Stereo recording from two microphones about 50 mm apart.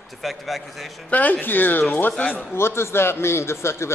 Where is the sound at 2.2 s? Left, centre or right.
Centre.